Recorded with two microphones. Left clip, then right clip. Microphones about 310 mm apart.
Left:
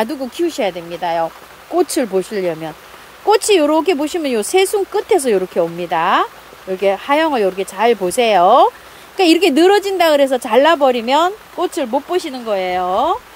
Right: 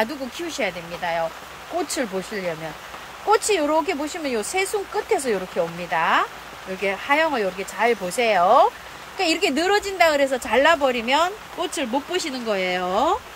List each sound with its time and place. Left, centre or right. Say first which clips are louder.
0.0 s speech: left 7 dB; left